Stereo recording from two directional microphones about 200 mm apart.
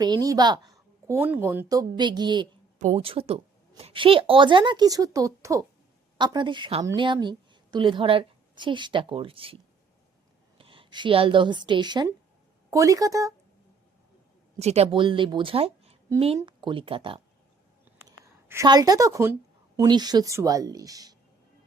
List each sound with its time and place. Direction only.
0.0 s a woman's voice: 20° right (ahead or behind)
2.7 s a woman's voice: 35° right (ahead or behind)
10.6 s a woman's voice: 25° right (ahead or behind)
14.6 s a woman's voice: 30° right (ahead or behind)
18.0 s a woman's voice: 15° right (ahead or behind)